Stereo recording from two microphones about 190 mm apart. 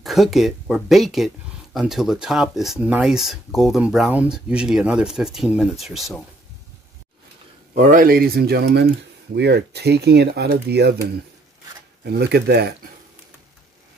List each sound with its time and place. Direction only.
0.0 s speech: centre (ahead or behind)
7.7 s speech: 40° right (ahead or behind); by 12.7 s 60° right (ahead or behind)